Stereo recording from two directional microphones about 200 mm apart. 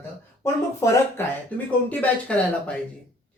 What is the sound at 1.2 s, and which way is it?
Speech, 10° left (ahead or behind).